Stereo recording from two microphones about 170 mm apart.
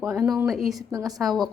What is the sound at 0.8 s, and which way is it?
Speech, 20° right (ahead or behind).